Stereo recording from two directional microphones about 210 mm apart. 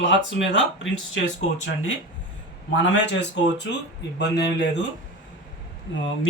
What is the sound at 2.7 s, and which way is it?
A man's voice, 55° left (ahead or behind).